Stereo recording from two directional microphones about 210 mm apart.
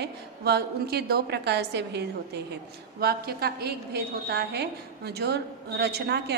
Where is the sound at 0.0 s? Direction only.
50° right (ahead or behind).